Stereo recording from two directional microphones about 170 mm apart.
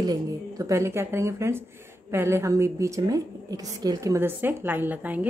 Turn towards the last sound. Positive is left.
turn(degrees=-10)  # may be behind; listen again after turning